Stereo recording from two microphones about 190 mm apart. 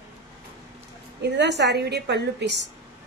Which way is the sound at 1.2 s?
65° right (ahead or behind).